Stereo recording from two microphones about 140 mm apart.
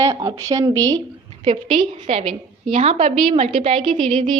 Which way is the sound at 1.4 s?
40° right (ahead or behind).